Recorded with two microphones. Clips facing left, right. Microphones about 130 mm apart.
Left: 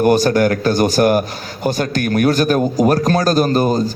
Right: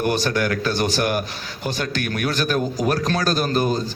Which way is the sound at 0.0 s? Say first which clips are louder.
Left 8 dB; 45° left (ahead or behind).